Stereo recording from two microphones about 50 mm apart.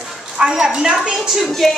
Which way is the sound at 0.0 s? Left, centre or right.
Centre.